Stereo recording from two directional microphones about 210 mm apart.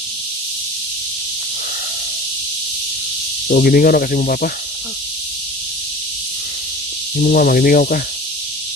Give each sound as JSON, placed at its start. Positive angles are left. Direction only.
{"t": 3.5, "sound": "speech", "side_deg": 45}
{"t": 7.2, "sound": "speech", "side_deg": 45}